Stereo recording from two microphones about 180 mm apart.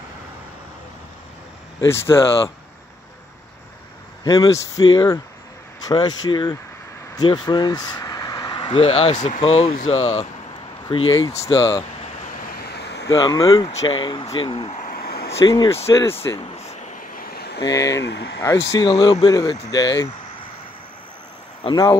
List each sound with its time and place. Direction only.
1.8 s speech: 15° left (ahead or behind)
4.2 s speech: 20° left (ahead or behind); by 10.2 s 35° left (ahead or behind)
11.2 s speech: 15° left (ahead or behind)
12.4 s vehicle: 60° left (ahead or behind)
13.1 s speech: 20° left (ahead or behind)
14.8 s a sound: 55° left (ahead or behind)
15.3 s speech: 20° left (ahead or behind)
17.4 s a sound: 65° left (ahead or behind)
18.0 s speech: 75° left (ahead or behind)
18.7 s speech: 25° left (ahead or behind)
21.6 s speech: 20° left (ahead or behind)